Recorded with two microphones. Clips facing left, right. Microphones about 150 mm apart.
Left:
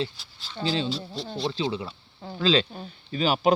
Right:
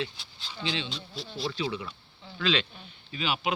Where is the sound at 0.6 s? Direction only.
40° left (ahead or behind).